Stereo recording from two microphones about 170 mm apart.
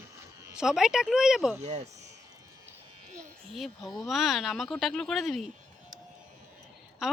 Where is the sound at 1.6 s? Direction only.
40° right (ahead or behind).